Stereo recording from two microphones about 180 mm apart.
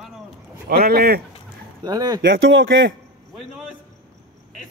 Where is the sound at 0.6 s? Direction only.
60° right (ahead or behind).